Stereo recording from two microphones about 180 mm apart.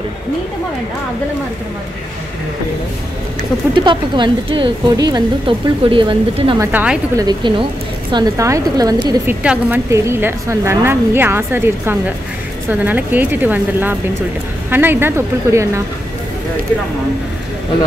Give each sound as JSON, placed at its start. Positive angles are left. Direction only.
{"t": 3.7, "sound": "speech", "side_deg": -25}
{"t": 6.6, "sound": "a woman's voice", "side_deg": -10}
{"t": 7.2, "sound": "a woman's voice", "side_deg": -25}